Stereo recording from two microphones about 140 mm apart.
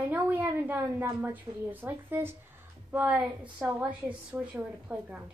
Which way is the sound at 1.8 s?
15° right (ahead or behind).